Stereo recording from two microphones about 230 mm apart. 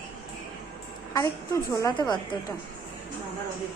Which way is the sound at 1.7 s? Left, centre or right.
Centre.